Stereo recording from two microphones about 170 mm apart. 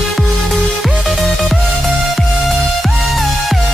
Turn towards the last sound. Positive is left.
turn(degrees=0)  # may be behind; listen again after turning